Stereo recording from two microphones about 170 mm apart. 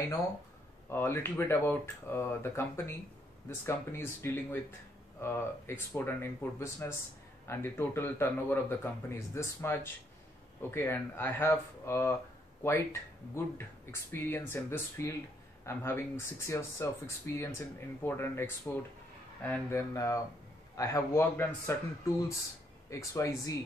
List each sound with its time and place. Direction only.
0.8 s speech: 15° left (ahead or behind)
13.3 s speech: 15° left (ahead or behind)
22.8 s speech: 15° left (ahead or behind)